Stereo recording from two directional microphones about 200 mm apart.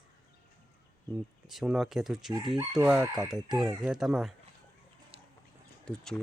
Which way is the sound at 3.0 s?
20° right (ahead or behind).